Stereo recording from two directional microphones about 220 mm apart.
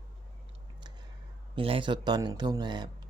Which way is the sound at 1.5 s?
25° right (ahead or behind).